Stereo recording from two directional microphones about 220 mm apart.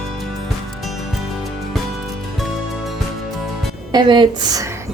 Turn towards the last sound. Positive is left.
turn(degrees=-15)  # may be behind; listen again after turning